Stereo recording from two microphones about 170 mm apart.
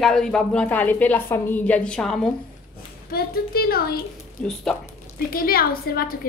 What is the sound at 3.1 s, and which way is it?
Speech, 65° left (ahead or behind).